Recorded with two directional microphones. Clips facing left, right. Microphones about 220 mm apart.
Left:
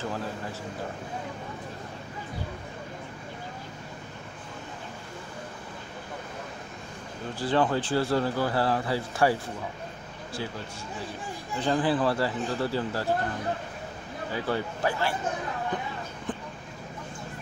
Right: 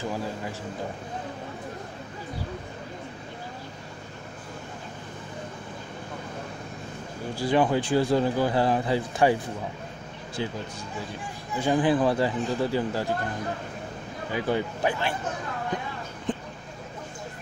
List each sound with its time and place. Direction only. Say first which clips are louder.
7.3 s speech: right 2 dB; 10° right (ahead or behind)
11.5 s speech: right 3 dB; 10° right (ahead or behind)
14.3 s speech: right 3 dB; 15° right (ahead or behind)
16.3 s vehicle: right 5 dB; 20° right (ahead or behind)